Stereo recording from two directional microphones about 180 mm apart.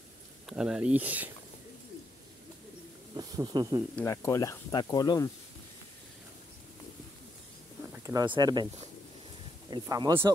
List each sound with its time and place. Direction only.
0.5 s speech: 5° right (ahead or behind)
3.2 s speech: 20° right (ahead or behind)
3.9 s speech: 15° left (ahead or behind)
8.0 s speech: 20° right (ahead or behind)
9.7 s speech: 20° right (ahead or behind)